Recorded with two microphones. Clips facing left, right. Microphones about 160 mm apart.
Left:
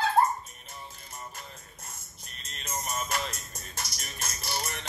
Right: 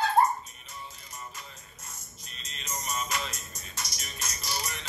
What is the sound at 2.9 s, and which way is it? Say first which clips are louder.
Music: even; 55° left (ahead or behind).